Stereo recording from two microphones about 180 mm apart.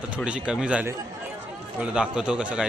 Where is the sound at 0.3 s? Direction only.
5° right (ahead or behind).